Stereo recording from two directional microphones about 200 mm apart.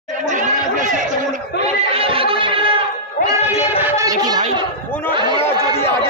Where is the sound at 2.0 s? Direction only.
25° right (ahead or behind).